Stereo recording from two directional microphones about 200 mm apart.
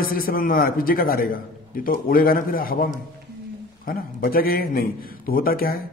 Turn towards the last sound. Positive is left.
turn(degrees=50)  # may be behind; listen again after turning